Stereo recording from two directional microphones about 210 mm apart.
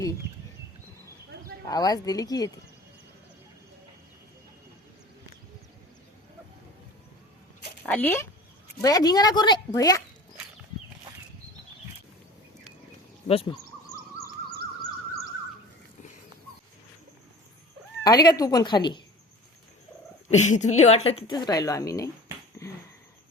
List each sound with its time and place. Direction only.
1.6 s a woman's voice: 20° left (ahead or behind)
7.9 s a woman's voice: 10° left (ahead or behind)
13.2 s speech: 30° left (ahead or behind)
18.0 s a woman's voice: 20° left (ahead or behind)
20.3 s a woman's voice: 35° left (ahead or behind); by 22.1 s 15° left (ahead or behind)
22.6 s a sound: 15° left (ahead or behind)